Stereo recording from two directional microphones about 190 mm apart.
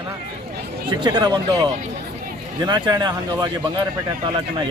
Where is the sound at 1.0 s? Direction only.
20° right (ahead or behind).